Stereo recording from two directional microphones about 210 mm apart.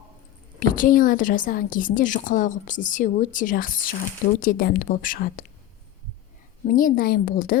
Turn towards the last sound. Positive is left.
turn(degrees=45)  # may be behind; listen again after turning